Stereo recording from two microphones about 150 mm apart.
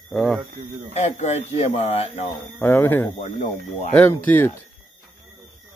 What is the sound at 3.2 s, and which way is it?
Speech, 55° left (ahead or behind).